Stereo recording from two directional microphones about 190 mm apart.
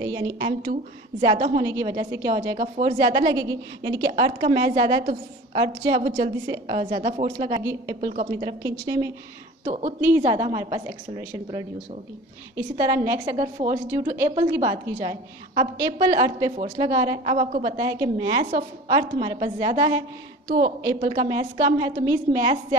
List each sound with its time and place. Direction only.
0.0 s a woman's voice: 20° right (ahead or behind)
1.6 s a woman's voice: 15° right (ahead or behind)
4.1 s a woman's voice: 30° right (ahead or behind)
6.0 s a woman's voice: 40° right (ahead or behind)
6.4 s a woman's voice: 25° right (ahead or behind)
8.1 s a woman's voice: 35° right (ahead or behind)
8.5 s a woman's voice: 20° right (ahead or behind)
9.7 s a woman's voice: 40° right (ahead or behind)
9.9 s a woman's voice: 10° right (ahead or behind)
17.2 s a woman's voice: 30° right (ahead or behind)
17.7 s a woman's voice: 20° right (ahead or behind)
20.4 s a woman's voice: 50° right (ahead or behind)
21.0 s a woman's voice: 25° right (ahead or behind)